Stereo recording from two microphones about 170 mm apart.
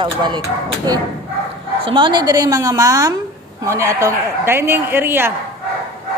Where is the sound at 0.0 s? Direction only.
25° right (ahead or behind).